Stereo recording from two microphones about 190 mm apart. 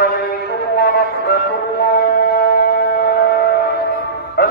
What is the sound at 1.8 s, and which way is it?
Shofar, 50° left (ahead or behind).